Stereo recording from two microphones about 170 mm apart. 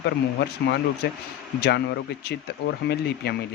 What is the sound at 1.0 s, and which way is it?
Speech, 75° left (ahead or behind).